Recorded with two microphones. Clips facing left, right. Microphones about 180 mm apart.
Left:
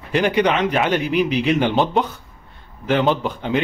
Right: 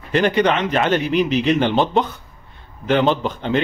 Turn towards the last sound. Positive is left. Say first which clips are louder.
# right 1 dB
turn(degrees=10)  # may be behind; listen again after turning